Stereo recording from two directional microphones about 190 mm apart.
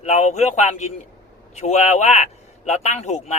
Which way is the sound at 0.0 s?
35° left (ahead or behind).